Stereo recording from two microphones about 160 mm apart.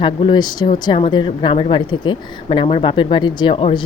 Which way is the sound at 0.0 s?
30° left (ahead or behind).